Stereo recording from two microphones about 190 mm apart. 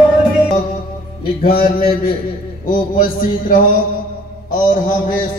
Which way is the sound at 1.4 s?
50° left (ahead or behind).